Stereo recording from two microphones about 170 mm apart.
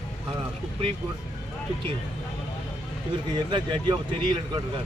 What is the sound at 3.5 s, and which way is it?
Speech, 25° right (ahead or behind).